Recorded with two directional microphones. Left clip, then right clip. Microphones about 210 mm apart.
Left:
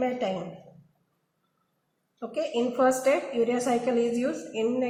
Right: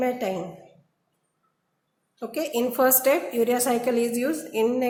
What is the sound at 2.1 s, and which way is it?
A woman's voice, 55° right (ahead or behind).